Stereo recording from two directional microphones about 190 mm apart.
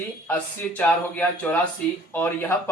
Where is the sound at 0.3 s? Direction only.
10° left (ahead or behind).